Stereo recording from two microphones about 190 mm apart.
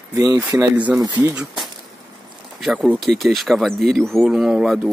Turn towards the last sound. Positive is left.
turn(degrees=-5)  # may be behind; listen again after turning